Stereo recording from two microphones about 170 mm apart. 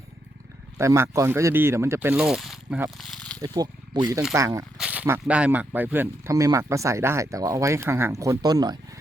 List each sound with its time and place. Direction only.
0.8 s speech: 15° right (ahead or behind)
3.0 s a sound: 5° left (ahead or behind)
3.4 s speech: 25° right (ahead or behind)
4.8 s speech: 10° right (ahead or behind); by 8.8 s 25° right (ahead or behind)